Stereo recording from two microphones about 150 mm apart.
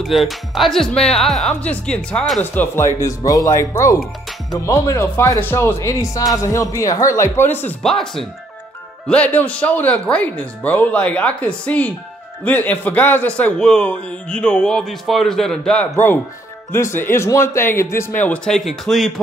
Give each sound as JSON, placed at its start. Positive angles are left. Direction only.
{"t": 0.0, "sound": "speech", "side_deg": 0}
{"t": 2.5, "sound": "speech", "side_deg": 15}
{"t": 7.8, "sound": "a man's voice", "side_deg": 5}